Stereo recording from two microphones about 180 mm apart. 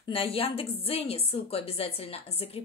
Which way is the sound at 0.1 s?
30° left (ahead or behind).